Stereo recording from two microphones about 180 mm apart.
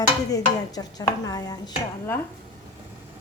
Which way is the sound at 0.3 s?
20° left (ahead or behind).